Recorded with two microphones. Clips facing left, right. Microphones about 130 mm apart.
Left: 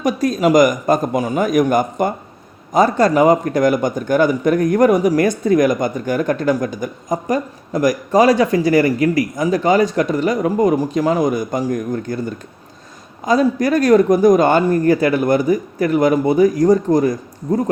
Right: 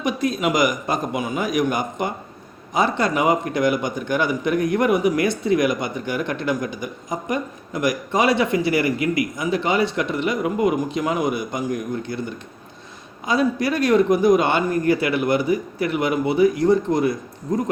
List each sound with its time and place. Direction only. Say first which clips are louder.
0.0 s speech: left 6 dB; 45° left (ahead or behind)